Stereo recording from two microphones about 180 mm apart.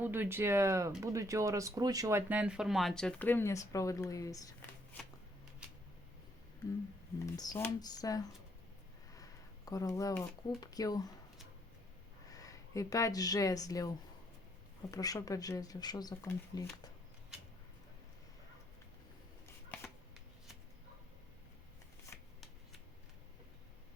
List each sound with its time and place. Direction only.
0.0 s speech: 10° right (ahead or behind); by 4.7 s 20° left (ahead or behind)
5.6 s a sound: 5° right (ahead or behind)
7.3 s speech: 20° left (ahead or behind)
9.1 s a sound: 20° left (ahead or behind)
10.6 s speech: 20° left (ahead or behind)
12.3 s speech: 20° left (ahead or behind)
19.7 s shuffling cards: 10° left (ahead or behind)
22.1 s shuffling cards: 10° left (ahead or behind)